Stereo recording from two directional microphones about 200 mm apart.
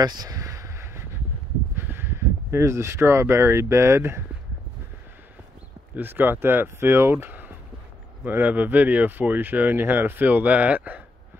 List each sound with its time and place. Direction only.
0.0 s a sound: 20° right (ahead or behind)
1.8 s speech: 10° right (ahead or behind)
5.9 s speech: 10° right (ahead or behind)